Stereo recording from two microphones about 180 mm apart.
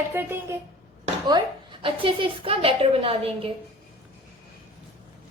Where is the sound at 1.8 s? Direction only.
30° right (ahead or behind).